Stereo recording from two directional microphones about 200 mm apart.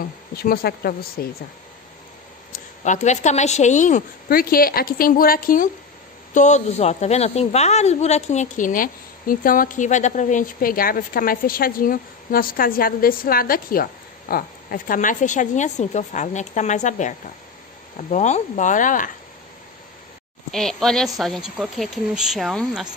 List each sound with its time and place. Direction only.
0.3 s speech: 50° left (ahead or behind)
2.5 s speech: 35° left (ahead or behind)
20.5 s speech: centre (ahead or behind)